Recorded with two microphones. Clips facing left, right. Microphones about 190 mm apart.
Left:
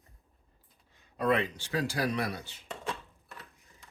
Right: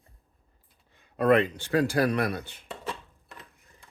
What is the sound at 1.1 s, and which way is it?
Speech, 55° right (ahead or behind).